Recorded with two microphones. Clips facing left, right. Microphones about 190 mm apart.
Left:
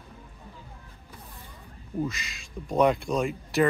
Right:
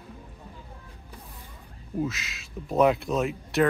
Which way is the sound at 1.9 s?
Centre (ahead or behind).